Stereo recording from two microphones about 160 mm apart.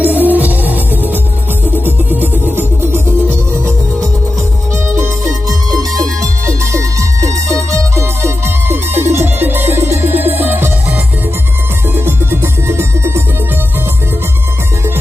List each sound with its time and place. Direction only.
0.0 s music: 10° right (ahead or behind)
5.7 s music: 25° right (ahead or behind)